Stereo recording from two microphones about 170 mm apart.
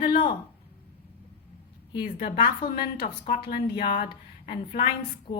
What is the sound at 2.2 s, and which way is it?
A woman's voice, 35° left (ahead or behind).